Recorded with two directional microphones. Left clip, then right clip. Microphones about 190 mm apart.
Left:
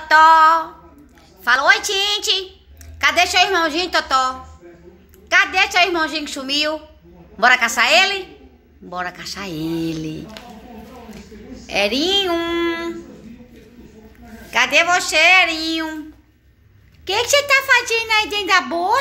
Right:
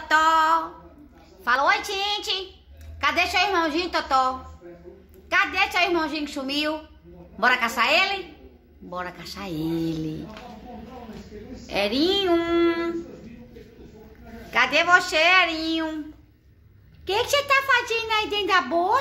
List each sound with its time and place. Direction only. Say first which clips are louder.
0.1 s a sound: left 8 dB; 5° right (ahead or behind)
1.4 s a woman's voice: left 6 dB; 5° left (ahead or behind)
11.6 s speech: left 5 dB; centre (ahead or behind)
14.5 s a woman's voice: left 3 dB; centre (ahead or behind)
17.0 s a child's voice: left 6 dB; 5° left (ahead or behind)